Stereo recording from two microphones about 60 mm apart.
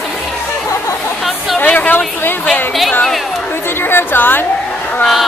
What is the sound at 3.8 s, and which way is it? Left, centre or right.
Speech, left.